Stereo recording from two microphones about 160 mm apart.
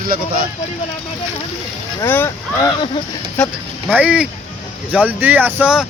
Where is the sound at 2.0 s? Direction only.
15° left (ahead or behind).